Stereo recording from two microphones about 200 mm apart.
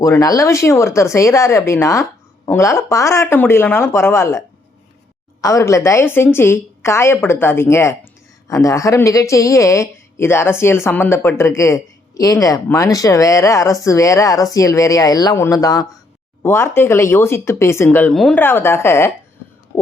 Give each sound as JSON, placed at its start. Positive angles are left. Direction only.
{"t": 0.0, "sound": "speech", "side_deg": 15}